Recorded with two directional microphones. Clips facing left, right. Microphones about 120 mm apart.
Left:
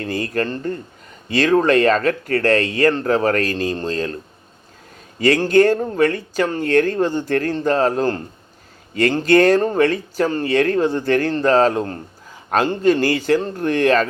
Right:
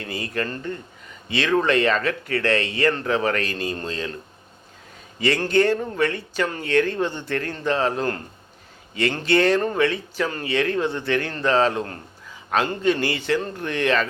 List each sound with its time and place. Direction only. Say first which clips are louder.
0.0 s speech: left 6 dB; 40° left (ahead or behind)
5.2 s a man's voice: left 6 dB; 45° left (ahead or behind)